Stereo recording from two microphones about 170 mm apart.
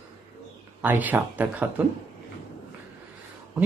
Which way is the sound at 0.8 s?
10° right (ahead or behind).